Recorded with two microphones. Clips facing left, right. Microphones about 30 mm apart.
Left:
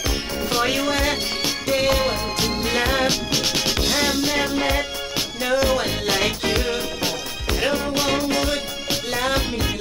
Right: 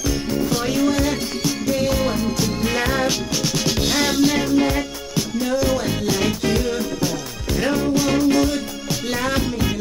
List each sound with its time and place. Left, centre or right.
0.4 s music: left
2.7 s music: left
3.3 s music: left
3.8 s music: centre
4.4 s music: left
9.2 s music: left